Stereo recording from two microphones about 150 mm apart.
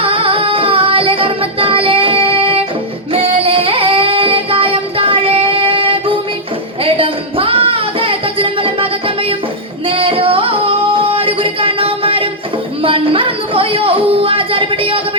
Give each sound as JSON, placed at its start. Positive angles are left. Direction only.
{"t": 0.0, "sound": "child singing", "side_deg": -35}
{"t": 6.8, "sound": "music", "side_deg": -40}
{"t": 9.8, "sound": "singing", "side_deg": -40}
{"t": 12.8, "sound": "a sound", "side_deg": -35}